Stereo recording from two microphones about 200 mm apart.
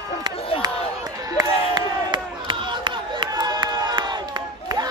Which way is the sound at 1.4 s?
20° right (ahead or behind).